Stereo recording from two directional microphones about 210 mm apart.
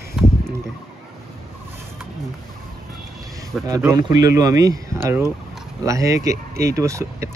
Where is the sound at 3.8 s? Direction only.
15° right (ahead or behind).